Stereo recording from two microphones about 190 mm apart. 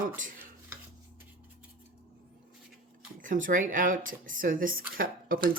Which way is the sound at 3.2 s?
45° right (ahead or behind).